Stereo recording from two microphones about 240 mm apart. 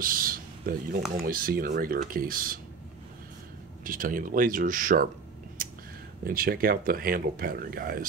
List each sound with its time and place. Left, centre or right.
0.0 s a sound: right
1.1 s speech: right
3.8 s speech: right
6.2 s speech: right